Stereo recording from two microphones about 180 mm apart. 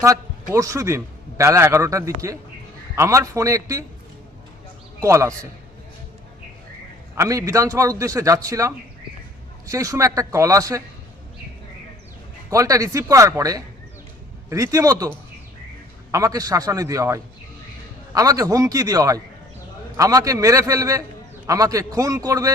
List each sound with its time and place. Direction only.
0.5 s a man's voice: 15° right (ahead or behind)
4.9 s a man's voice: 15° right (ahead or behind)
7.2 s a man's voice: 15° right (ahead or behind)
12.5 s a man's voice: 20° right (ahead or behind)
16.1 s a man's voice: 20° right (ahead or behind)